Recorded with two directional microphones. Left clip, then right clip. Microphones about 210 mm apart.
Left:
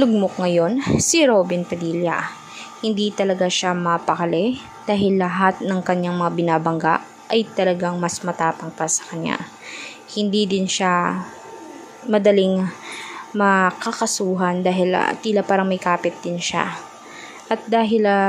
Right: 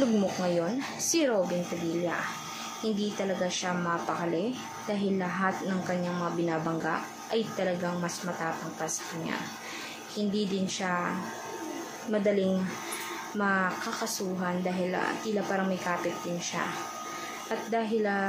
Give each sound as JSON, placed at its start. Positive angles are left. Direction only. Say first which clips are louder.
{"t": 0.0, "sound": "speech", "louder": "left 9 dB", "side_deg": 40}
{"t": 2.8, "sound": "a woman's voice", "louder": "left 11 dB", "side_deg": 40}